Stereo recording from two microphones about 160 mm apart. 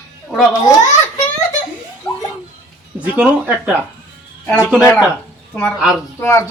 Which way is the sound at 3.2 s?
5° right (ahead or behind).